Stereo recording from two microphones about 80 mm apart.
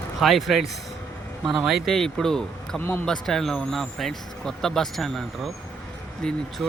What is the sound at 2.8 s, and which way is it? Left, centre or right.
Speech, left.